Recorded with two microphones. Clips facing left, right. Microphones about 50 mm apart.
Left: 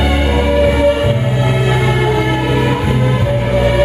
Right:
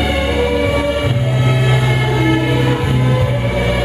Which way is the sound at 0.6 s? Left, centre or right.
Left.